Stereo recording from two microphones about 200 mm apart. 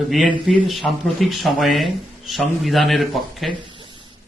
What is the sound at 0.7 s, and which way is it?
A man's voice, centre (ahead or behind).